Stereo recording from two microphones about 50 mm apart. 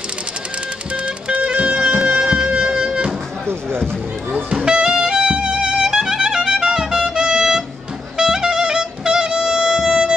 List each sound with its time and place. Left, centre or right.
0.9 s music: right
4.5 s music: centre